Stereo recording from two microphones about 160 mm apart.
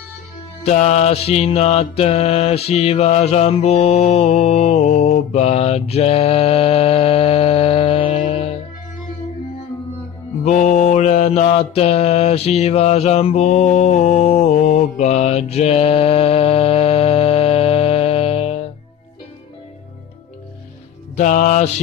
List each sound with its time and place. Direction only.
0.7 s mantra: 45° left (ahead or behind)
10.4 s mantra: 50° left (ahead or behind)
21.2 s music: 50° left (ahead or behind)